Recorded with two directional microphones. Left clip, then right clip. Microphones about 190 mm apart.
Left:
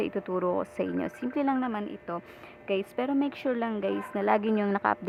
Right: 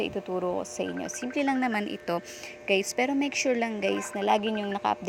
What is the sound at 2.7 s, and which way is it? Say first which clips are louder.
Speech: right 4 dB; 10° right (ahead or behind).